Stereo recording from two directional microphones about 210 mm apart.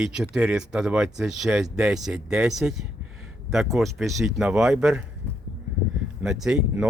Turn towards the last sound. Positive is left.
turn(degrees=0)  # may be behind; listen again after turning